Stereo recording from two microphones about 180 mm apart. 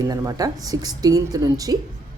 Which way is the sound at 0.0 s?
20° right (ahead or behind).